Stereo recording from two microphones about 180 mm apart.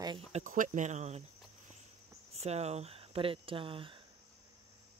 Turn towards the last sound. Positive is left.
turn(degrees=-30)  # may be behind; listen again after turning